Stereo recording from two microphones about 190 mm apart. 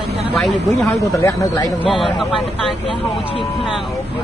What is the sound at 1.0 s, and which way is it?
Speech, 15° left (ahead or behind).